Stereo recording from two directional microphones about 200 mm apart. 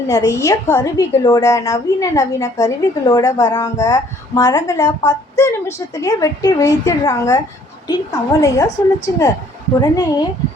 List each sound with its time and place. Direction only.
0.1 s a woman's voice: 15° left (ahead or behind)
9.8 s a woman's voice: 20° left (ahead or behind)